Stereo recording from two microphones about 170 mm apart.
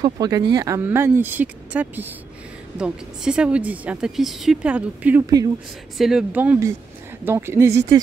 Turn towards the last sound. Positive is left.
turn(degrees=-15)  # may be behind; listen again after turning